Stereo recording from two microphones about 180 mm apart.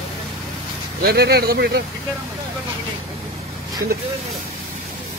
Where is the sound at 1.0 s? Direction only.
65° right (ahead or behind).